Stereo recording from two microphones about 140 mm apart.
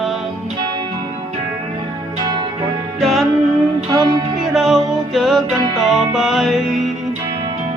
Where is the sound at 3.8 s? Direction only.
30° right (ahead or behind).